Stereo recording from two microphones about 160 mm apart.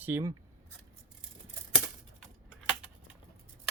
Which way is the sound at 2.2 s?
5° right (ahead or behind).